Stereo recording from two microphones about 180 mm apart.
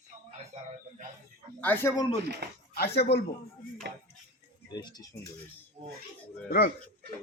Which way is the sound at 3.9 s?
70° right (ahead or behind).